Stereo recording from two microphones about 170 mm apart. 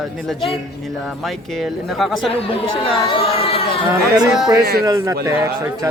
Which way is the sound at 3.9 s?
25° right (ahead or behind).